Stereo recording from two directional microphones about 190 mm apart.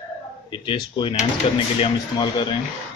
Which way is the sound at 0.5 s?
25° left (ahead or behind).